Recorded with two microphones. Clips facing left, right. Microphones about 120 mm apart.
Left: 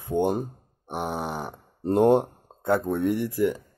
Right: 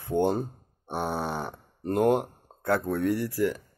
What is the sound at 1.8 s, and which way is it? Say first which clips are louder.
Speech: left 4 dB; 30° left (ahead or behind).